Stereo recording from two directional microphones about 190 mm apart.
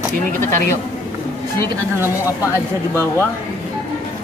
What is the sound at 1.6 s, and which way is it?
Speech, 10° right (ahead or behind).